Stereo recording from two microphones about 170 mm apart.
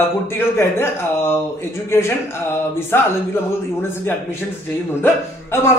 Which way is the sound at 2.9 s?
15° left (ahead or behind).